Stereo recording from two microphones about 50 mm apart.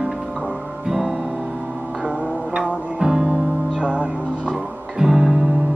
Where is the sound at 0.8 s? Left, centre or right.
Centre.